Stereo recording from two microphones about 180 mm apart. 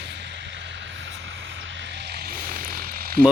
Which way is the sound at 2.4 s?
55° right (ahead or behind).